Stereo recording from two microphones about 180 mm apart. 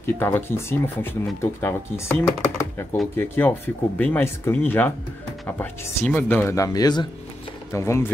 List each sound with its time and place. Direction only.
0.0 s speech: 10° left (ahead or behind)